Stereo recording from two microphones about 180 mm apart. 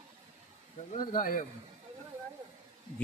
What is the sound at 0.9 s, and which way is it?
Speech, 50° left (ahead or behind).